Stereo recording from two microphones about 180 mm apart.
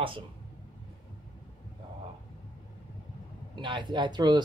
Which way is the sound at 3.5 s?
25° right (ahead or behind).